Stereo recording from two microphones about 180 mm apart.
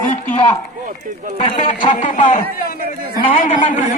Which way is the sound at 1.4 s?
40° left (ahead or behind).